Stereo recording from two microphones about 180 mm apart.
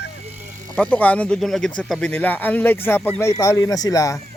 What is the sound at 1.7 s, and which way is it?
Crowing, 5° left (ahead or behind).